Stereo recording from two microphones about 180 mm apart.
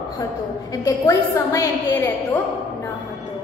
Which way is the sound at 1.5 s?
15° left (ahead or behind).